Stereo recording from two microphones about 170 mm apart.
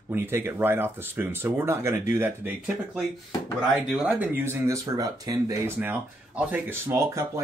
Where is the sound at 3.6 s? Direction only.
Centre (ahead or behind).